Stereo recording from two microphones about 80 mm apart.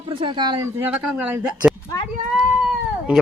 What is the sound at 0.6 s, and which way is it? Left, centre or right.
Speech, right.